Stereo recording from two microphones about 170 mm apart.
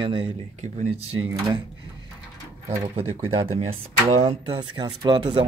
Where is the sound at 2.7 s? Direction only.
35° right (ahead or behind).